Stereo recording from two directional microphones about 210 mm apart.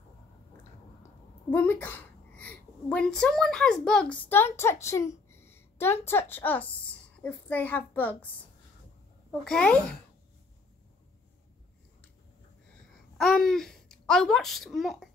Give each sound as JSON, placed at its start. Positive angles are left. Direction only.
{"t": 1.5, "sound": "a woman's voice", "side_deg": 10}
{"t": 4.6, "sound": "a sound", "side_deg": 10}
{"t": 6.0, "sound": "a child's voice", "side_deg": 10}
{"t": 9.3, "sound": "speech", "side_deg": 5}
{"t": 13.2, "sound": "a child's voice", "side_deg": 0}